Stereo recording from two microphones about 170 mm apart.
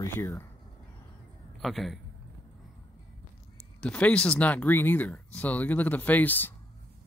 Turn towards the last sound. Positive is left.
turn(degrees=10)  # may be behind; listen again after turning